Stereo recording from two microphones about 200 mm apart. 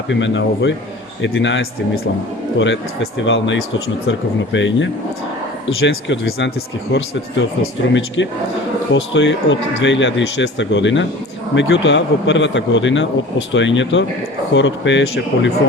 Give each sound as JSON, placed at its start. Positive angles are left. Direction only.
{"t": 0.1, "sound": "a man's voice", "side_deg": 65}